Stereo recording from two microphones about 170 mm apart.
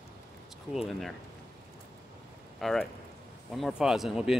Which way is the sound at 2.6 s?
Centre (ahead or behind).